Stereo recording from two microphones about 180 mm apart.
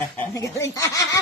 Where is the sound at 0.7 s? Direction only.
20° left (ahead or behind).